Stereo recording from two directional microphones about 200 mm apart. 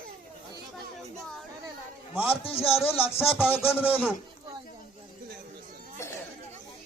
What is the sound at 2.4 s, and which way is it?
Speech, 30° left (ahead or behind).